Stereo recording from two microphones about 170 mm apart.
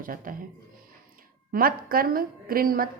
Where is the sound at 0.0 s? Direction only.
55° right (ahead or behind).